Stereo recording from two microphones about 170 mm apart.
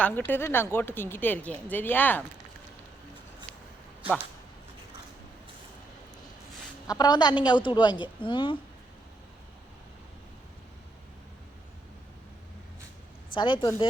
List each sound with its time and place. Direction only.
0.0 s speech: 10° left (ahead or behind)
6.8 s a woman's voice: 20° left (ahead or behind)
13.3 s a woman's voice: 25° left (ahead or behind)